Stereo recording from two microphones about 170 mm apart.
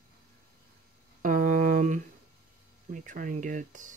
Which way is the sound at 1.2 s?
50° right (ahead or behind).